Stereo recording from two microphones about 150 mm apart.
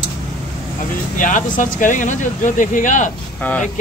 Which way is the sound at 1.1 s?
60° left (ahead or behind).